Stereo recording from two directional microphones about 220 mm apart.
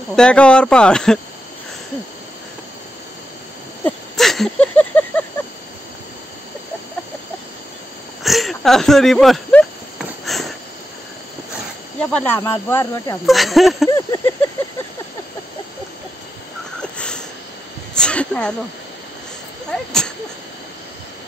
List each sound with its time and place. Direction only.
0.1 s speech: 5° left (ahead or behind)
3.8 s a sound: centre (ahead or behind)
8.2 s a sound: centre (ahead or behind)
12.0 s speech: 5° left (ahead or behind)
13.2 s speech: centre (ahead or behind)
13.8 s speech: 15° left (ahead or behind)
16.9 s sniff: 5° left (ahead or behind)
17.9 s speech: 5° left (ahead or behind)